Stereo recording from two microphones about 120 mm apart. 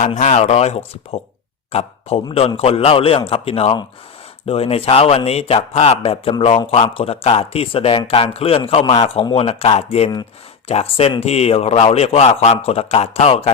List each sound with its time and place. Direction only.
0.2 s a man's voice: 85° left; by 13.5 s 55° left (ahead or behind)